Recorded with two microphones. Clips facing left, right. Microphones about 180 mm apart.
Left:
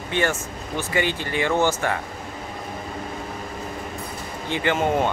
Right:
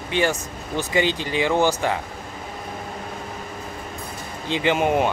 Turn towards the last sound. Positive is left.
turn(degrees=-15)  # may be behind; listen again after turning